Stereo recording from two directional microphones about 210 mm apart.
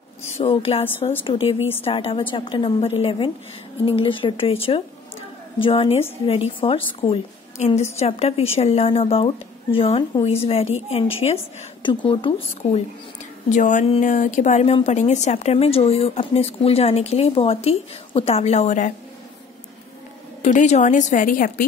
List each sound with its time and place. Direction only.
0.3 s a woman's voice: 30° left (ahead or behind)
13.5 s speech: 35° left (ahead or behind)
20.4 s speech: 35° left (ahead or behind)